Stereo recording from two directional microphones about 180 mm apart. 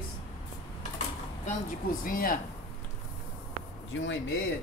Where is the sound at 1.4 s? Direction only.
50° left (ahead or behind).